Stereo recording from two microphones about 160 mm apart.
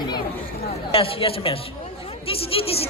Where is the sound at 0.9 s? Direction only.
35° left (ahead or behind).